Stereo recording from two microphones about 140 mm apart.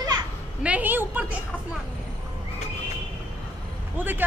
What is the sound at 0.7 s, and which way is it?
Speech, 10° right (ahead or behind).